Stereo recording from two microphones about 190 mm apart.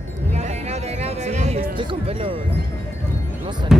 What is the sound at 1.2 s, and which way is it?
Music, 35° right (ahead or behind).